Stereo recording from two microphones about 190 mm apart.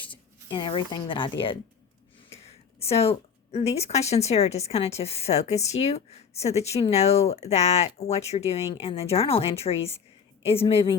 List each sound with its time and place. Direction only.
0.0 s speech: 25° left (ahead or behind)
2.8 s a woman's voice: 30° left (ahead or behind)